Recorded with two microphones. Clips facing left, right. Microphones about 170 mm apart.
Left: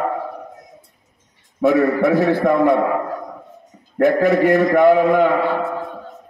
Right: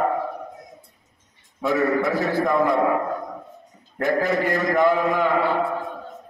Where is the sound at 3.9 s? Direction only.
60° left (ahead or behind).